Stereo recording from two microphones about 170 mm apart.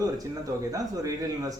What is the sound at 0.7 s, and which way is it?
Speech, 20° right (ahead or behind).